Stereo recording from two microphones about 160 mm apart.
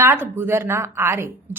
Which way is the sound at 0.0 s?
15° right (ahead or behind).